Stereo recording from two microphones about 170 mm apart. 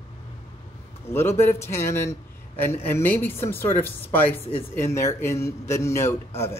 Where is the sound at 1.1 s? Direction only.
15° left (ahead or behind).